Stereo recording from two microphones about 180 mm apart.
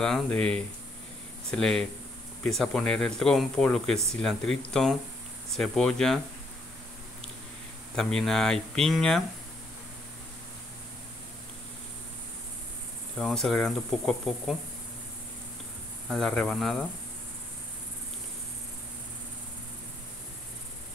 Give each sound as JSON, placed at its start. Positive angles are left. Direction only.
{"t": 0.0, "sound": "speech", "side_deg": 5}
{"t": 7.9, "sound": "speech", "side_deg": 5}
{"t": 13.2, "sound": "speech", "side_deg": 5}
{"t": 16.1, "sound": "speech", "side_deg": 5}